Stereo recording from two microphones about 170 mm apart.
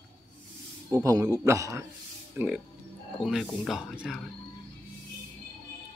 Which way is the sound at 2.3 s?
5° right (ahead or behind).